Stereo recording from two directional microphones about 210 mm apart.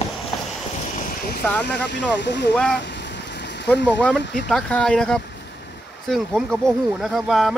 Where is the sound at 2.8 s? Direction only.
55° left (ahead or behind).